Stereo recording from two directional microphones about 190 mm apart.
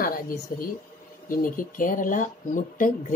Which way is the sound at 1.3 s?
45° left (ahead or behind).